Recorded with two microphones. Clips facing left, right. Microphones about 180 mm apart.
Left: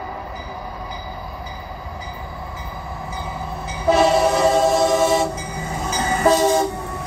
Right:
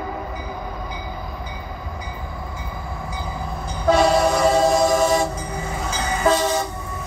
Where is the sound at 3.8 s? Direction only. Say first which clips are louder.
Left 1 dB; 5° left (ahead or behind).